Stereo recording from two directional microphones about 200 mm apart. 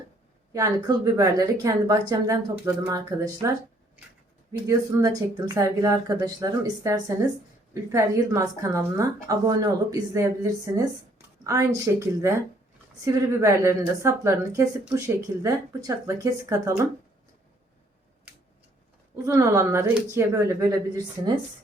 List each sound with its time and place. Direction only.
0.5 s speech: 15° right (ahead or behind)
4.9 s speech: 15° right (ahead or behind)
19.2 s speech: 15° right (ahead or behind)